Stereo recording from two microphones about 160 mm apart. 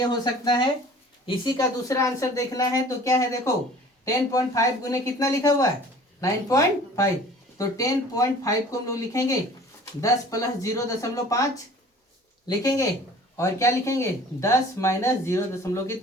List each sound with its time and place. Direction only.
0.0 s speech: 25° left (ahead or behind)
12.5 s speech: 20° left (ahead or behind)